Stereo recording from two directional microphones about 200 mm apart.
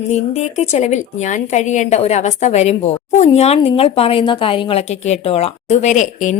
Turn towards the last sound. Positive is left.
turn(degrees=40)  # may be behind; listen again after turning